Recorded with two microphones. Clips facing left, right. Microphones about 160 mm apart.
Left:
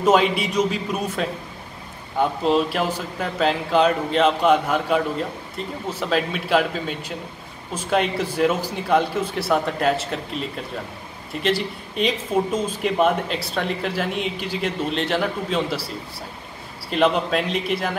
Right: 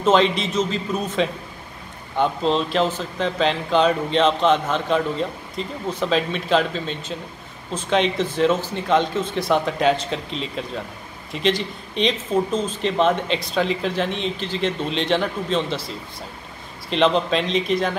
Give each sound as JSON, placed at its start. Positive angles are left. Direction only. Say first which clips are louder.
{"t": 0.0, "sound": "speech", "louder": "even", "side_deg": 10}
{"t": 16.9, "sound": "speech", "louder": "right 1 dB", "side_deg": 5}